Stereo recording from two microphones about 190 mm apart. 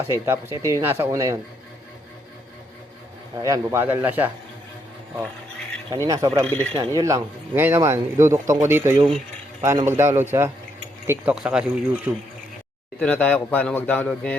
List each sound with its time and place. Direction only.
0.0 s speech: 10° right (ahead or behind)
3.3 s speech: 15° right (ahead or behind)
5.9 s speech: 15° right (ahead or behind)
6.4 s a man's voice: 5° left (ahead or behind)
6.7 s speech: 15° right (ahead or behind)
13.0 s a man's voice: 5° left (ahead or behind)